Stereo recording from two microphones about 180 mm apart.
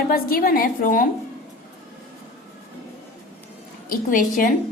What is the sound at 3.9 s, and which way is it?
Speech, 50° left (ahead or behind).